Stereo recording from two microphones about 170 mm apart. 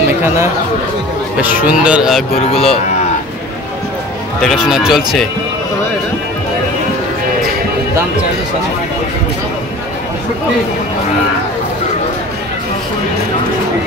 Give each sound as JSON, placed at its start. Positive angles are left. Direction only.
{"t": 1.4, "sound": "speech", "side_deg": -10}
{"t": 2.3, "sound": "speech", "side_deg": 35}
{"t": 4.4, "sound": "speech", "side_deg": 0}